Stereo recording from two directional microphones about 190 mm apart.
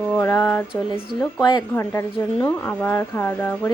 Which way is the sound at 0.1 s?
15° left (ahead or behind).